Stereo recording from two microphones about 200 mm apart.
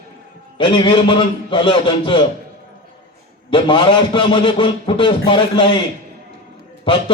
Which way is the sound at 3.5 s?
25° left (ahead or behind).